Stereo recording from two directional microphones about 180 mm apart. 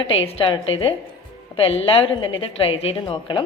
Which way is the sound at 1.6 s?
35° left (ahead or behind).